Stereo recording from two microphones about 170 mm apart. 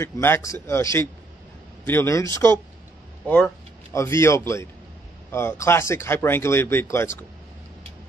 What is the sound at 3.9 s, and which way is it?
Speech, 15° left (ahead or behind).